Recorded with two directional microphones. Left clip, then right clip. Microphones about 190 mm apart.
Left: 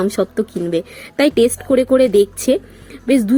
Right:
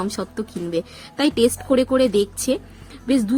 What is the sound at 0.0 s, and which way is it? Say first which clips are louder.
Speech: left 9 dB; 15° left (ahead or behind).